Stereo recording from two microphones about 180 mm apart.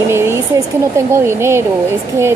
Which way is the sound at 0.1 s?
15° right (ahead or behind).